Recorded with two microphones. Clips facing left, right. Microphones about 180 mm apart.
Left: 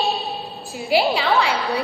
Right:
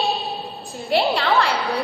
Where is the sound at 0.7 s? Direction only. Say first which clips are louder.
Left 1 dB; centre (ahead or behind).